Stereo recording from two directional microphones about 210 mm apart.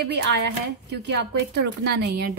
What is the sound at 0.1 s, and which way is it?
A woman's voice, 55° right (ahead or behind).